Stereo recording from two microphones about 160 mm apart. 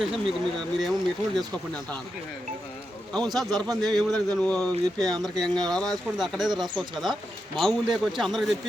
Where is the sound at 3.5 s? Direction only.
25° right (ahead or behind).